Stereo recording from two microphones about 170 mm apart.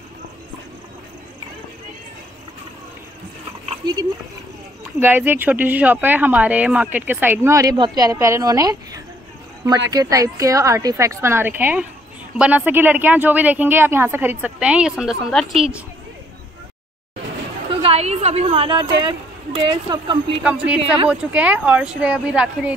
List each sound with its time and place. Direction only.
5.0 s speech: 10° right (ahead or behind)
17.8 s a woman's voice: 40° right (ahead or behind)
20.4 s speech: 5° right (ahead or behind)